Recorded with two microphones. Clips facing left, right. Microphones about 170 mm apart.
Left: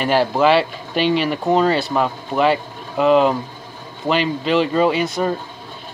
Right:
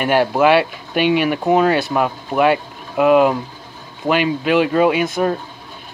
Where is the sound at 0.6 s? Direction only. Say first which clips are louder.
Right 1 dB; 55° right (ahead or behind).